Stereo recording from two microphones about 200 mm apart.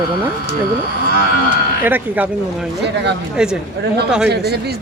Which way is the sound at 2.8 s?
60° right (ahead or behind).